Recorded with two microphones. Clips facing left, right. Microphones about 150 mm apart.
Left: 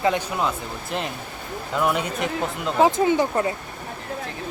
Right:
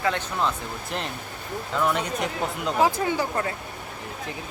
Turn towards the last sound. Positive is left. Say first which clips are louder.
# left 6 dB
turn(degrees=20)  # may be behind; listen again after turning